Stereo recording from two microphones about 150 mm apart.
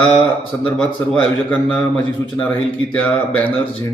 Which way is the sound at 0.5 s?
15° left (ahead or behind).